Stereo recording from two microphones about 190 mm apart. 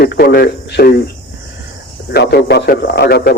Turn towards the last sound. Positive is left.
turn(degrees=55)  # may be behind; listen again after turning